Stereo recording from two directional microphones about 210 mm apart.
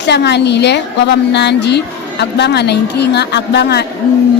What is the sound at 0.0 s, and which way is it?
A woman's voice, 55° left (ahead or behind).